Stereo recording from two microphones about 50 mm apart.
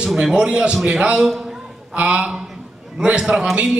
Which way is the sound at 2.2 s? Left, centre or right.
Centre.